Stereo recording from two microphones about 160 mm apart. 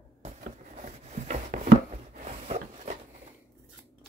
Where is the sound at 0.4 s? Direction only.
50° right (ahead or behind).